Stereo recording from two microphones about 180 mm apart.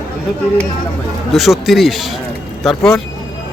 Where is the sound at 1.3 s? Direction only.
Centre (ahead or behind).